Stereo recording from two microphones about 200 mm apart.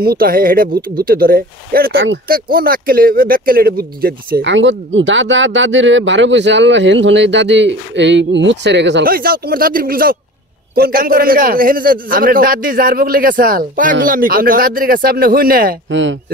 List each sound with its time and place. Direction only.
0.0 s a man's voice: 50° right (ahead or behind)
15.9 s speech: 65° right (ahead or behind)